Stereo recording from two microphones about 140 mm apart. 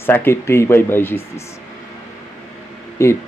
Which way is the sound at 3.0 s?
20° left (ahead or behind).